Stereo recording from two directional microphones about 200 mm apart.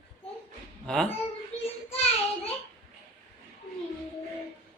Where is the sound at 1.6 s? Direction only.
30° left (ahead or behind).